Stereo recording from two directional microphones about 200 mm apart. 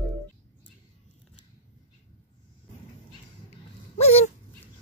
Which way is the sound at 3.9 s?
30° left (ahead or behind).